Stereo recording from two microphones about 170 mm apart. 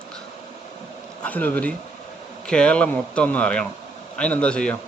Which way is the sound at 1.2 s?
10° left (ahead or behind).